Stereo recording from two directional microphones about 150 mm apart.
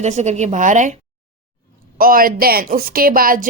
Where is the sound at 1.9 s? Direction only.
70° right (ahead or behind).